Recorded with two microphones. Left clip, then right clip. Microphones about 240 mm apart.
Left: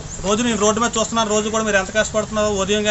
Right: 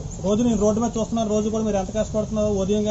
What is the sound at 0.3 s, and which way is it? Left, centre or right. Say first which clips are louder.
A man's voice: left 3 dB; left.